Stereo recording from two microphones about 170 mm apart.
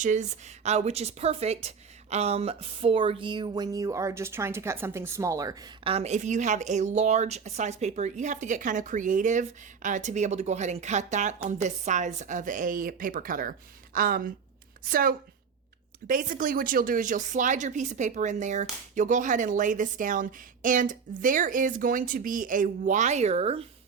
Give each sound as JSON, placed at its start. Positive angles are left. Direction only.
{"t": 0.0, "sound": "a woman's voice", "side_deg": -45}